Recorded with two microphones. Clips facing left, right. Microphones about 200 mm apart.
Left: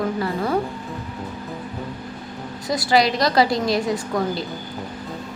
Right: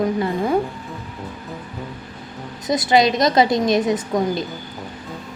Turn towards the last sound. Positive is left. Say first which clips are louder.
# right 3 dB
turn(degrees=-20)  # may be behind; listen again after turning